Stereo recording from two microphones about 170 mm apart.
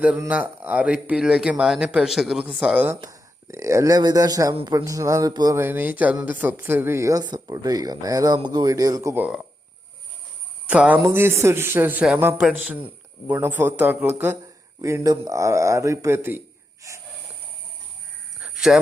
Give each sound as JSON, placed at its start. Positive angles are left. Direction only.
{"t": 0.0, "sound": "speech", "side_deg": -10}
{"t": 10.7, "sound": "speech", "side_deg": -10}
{"t": 18.3, "sound": "a sound", "side_deg": -5}